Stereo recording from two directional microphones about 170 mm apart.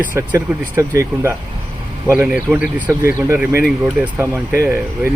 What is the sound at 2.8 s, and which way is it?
Speech, 15° right (ahead or behind).